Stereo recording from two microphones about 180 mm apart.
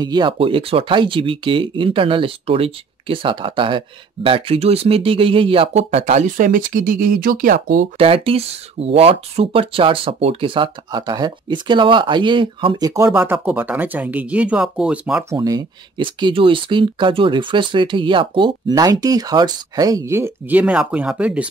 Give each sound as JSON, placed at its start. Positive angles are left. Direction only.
{"t": 0.0, "sound": "speech", "side_deg": -25}
{"t": 8.0, "sound": "speech", "side_deg": -30}
{"t": 15.2, "sound": "speech", "side_deg": -20}